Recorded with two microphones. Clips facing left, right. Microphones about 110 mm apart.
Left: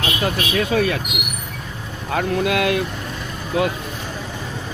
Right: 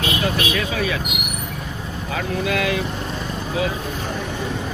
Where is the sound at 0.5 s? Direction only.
50° left (ahead or behind).